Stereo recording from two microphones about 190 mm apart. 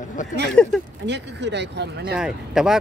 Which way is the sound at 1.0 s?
65° right (ahead or behind).